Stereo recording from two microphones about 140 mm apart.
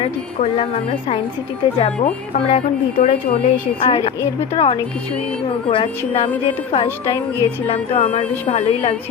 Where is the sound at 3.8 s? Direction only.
35° left (ahead or behind).